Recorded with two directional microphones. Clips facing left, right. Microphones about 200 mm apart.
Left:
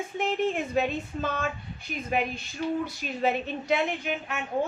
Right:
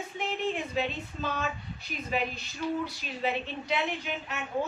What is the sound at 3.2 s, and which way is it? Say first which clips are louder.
A woman's voice: left 4 dB; 50° left (ahead or behind).